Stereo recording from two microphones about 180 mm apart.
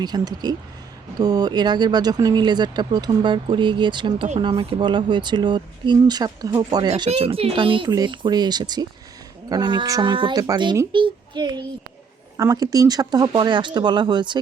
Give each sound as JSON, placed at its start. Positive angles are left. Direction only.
{"t": 0.0, "sound": "speech", "side_deg": -20}